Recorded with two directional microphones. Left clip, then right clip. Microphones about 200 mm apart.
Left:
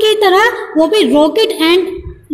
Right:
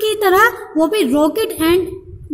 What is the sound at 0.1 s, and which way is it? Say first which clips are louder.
A woman's voice: left 3 dB; 30° right (ahead or behind).